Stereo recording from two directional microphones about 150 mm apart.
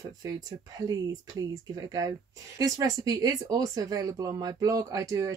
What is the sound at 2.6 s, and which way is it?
Speech, 25° right (ahead or behind).